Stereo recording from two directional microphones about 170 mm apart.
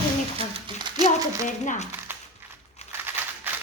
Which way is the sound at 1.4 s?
45° left (ahead or behind).